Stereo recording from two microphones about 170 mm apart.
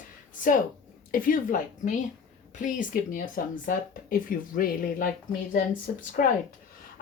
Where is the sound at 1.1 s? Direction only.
55° left (ahead or behind).